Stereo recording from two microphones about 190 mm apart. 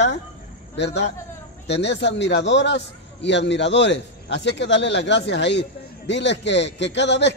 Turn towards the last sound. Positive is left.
turn(degrees=65)  # may be behind; listen again after turning